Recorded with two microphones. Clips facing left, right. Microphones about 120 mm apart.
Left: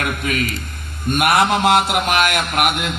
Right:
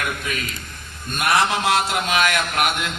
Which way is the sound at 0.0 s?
60° left (ahead or behind).